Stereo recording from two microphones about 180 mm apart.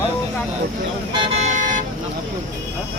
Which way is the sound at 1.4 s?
45° right (ahead or behind).